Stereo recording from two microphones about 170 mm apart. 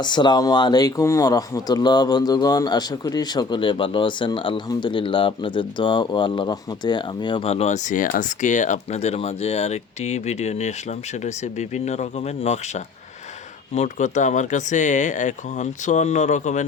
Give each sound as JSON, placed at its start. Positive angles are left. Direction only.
{"t": 0.0, "sound": "speech", "side_deg": 25}